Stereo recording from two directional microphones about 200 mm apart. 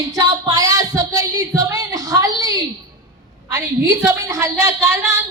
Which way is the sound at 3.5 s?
15° right (ahead or behind).